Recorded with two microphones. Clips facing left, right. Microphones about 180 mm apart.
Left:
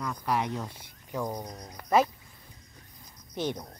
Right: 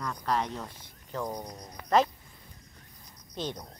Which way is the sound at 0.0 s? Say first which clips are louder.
Left 1 dB; 5° left (ahead or behind).